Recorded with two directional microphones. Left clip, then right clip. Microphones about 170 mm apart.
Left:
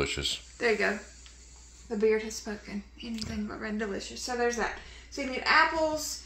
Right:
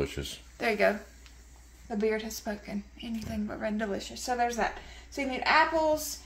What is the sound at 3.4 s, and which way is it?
Speech, 90° right.